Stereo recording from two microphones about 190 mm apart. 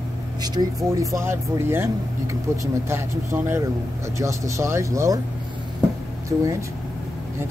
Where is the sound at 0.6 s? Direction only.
25° right (ahead or behind).